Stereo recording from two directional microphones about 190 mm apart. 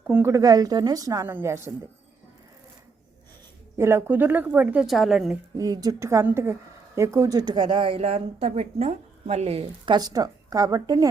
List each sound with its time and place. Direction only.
0.1 s a woman's voice: 10° right (ahead or behind)
3.8 s a woman's voice: 10° right (ahead or behind)
5.5 s a woman's voice: 20° right (ahead or behind)